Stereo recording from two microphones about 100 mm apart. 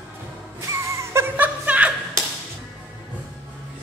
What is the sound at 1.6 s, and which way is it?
Clapping, 15° right (ahead or behind).